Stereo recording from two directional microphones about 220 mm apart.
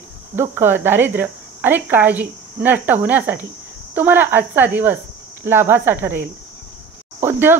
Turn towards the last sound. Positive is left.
turn(degrees=-10)  # may be behind; listen again after turning